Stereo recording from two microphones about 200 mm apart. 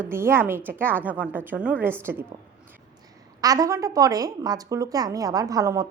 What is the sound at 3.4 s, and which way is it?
A woman's voice, 15° right (ahead or behind).